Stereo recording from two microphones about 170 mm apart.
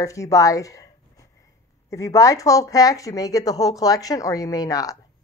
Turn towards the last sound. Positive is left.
turn(degrees=20)  # may be behind; listen again after turning